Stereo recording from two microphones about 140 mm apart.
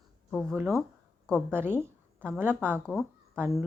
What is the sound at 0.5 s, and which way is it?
A woman's voice, 20° right (ahead or behind).